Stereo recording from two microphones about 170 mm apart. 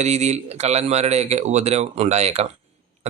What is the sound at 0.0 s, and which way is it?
A man's voice, 40° right (ahead or behind).